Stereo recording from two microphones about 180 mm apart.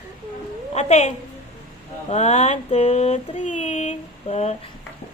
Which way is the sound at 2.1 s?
35° left (ahead or behind).